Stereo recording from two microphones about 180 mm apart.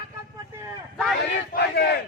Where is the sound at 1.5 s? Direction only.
65° left (ahead or behind).